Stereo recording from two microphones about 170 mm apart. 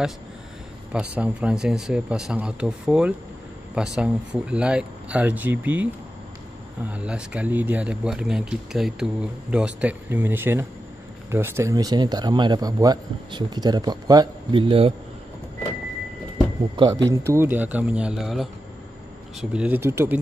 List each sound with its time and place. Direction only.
1.1 s speech: 5° right (ahead or behind)
6.9 s speech: 5° right (ahead or behind); by 15.0 s 35° right (ahead or behind)
16.7 s speech: 25° right (ahead or behind); by 18.5 s centre (ahead or behind)
19.5 s speech: 10° right (ahead or behind)